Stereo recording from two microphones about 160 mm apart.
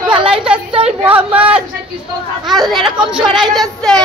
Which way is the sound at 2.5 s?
Centre (ahead or behind).